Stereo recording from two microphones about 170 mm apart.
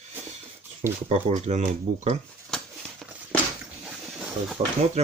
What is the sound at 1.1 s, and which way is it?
Speech, 40° right (ahead or behind).